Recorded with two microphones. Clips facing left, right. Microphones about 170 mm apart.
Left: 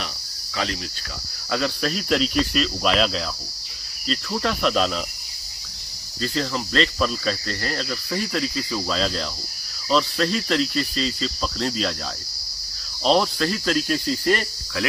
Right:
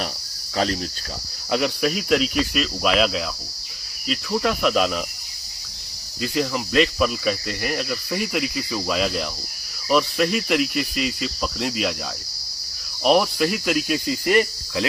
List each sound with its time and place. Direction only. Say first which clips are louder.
0.5 s cricket: right 5 dB; 40° right (ahead or behind)
1.5 s cricket: right 3 dB; 15° right (ahead or behind)
6.1 s speech: right 2 dB; 10° right (ahead or behind)
13.1 s speech: right 2 dB; 10° right (ahead or behind)